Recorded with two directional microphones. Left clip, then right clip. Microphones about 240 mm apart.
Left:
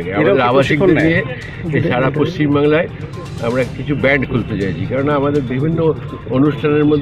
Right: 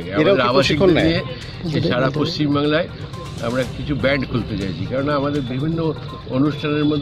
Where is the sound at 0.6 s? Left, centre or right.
Right.